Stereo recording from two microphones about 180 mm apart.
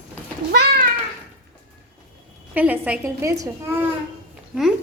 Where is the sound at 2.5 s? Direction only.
10° right (ahead or behind).